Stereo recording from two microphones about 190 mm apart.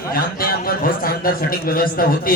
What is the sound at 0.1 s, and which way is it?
A man's voice, 50° left (ahead or behind).